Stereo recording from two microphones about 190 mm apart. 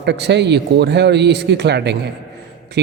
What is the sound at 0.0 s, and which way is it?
A man's voice, 65° right (ahead or behind).